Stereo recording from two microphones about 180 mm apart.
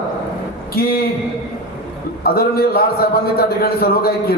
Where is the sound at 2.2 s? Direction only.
60° left (ahead or behind).